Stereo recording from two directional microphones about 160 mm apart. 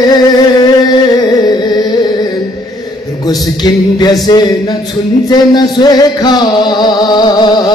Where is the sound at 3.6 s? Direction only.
25° left (ahead or behind).